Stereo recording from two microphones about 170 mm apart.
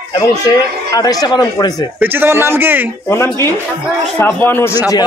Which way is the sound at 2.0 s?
10° right (ahead or behind).